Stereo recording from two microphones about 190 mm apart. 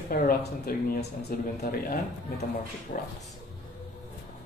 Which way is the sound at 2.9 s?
50° left (ahead or behind).